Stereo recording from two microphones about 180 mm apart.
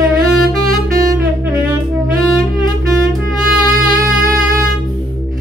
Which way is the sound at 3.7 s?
50° right (ahead or behind).